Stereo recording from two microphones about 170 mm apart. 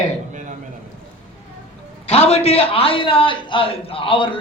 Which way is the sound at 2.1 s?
35° left (ahead or behind).